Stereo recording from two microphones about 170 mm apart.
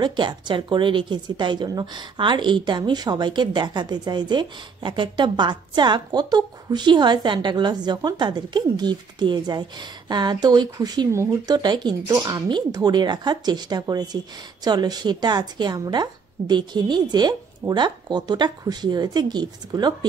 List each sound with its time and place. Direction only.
0.0 s speech: 25° right (ahead or behind)